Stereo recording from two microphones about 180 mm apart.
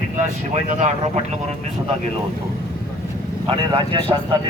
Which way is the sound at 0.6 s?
40° right (ahead or behind).